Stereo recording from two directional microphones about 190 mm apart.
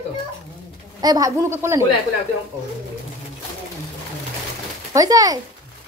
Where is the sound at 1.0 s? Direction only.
20° right (ahead or behind).